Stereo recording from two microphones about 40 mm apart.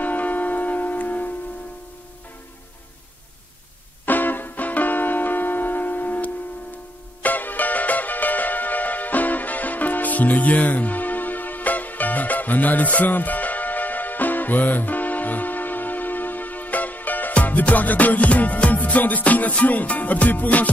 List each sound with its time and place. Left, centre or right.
0.0 s music: left
4.0 s music: left